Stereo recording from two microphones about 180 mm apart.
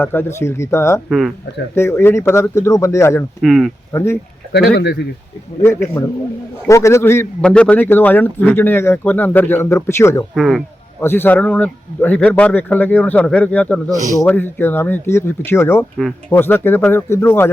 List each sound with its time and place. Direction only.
0.0 s a man's voice: 10° left (ahead or behind)
3.4 s speech: centre (ahead or behind)
3.9 s a man's voice: 15° left (ahead or behind)
4.5 s speech: 65° left (ahead or behind)
5.6 s a man's voice: 15° left (ahead or behind)
10.3 s speech: centre (ahead or behind)
11.0 s a man's voice: 10° left (ahead or behind)